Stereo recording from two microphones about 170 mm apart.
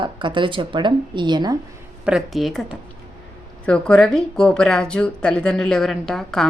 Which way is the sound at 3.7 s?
5° left (ahead or behind).